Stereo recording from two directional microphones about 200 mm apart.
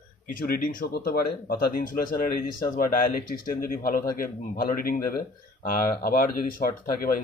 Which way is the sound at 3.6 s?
45° left (ahead or behind).